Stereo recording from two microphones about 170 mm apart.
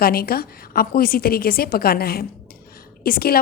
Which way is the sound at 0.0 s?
60° left (ahead or behind).